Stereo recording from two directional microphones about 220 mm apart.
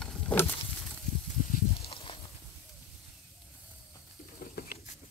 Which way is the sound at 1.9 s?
25° left (ahead or behind).